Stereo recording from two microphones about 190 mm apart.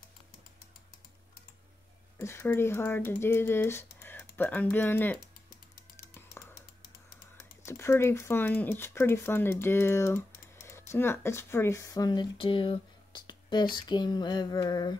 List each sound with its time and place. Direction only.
2.1 s speech: 15° left (ahead or behind)
7.3 s speech: 15° left (ahead or behind)
13.7 s a sound: 25° left (ahead or behind)